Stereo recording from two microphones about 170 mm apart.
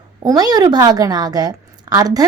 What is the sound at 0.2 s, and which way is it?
A woman's voice, 20° right (ahead or behind).